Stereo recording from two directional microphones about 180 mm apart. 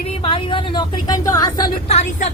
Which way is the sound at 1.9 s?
40° left (ahead or behind).